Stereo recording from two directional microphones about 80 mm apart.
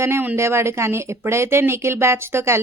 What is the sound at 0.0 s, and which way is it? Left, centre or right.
Speech, right.